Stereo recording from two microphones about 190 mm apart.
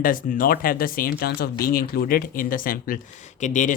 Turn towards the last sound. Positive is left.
turn(degrees=40)  # may be behind; listen again after turning